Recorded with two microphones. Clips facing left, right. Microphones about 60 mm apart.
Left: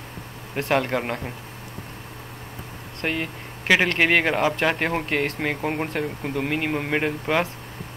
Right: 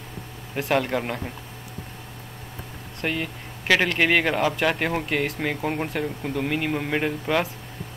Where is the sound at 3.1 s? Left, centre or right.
Centre.